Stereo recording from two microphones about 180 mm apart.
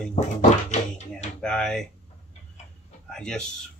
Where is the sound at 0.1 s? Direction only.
40° left (ahead or behind).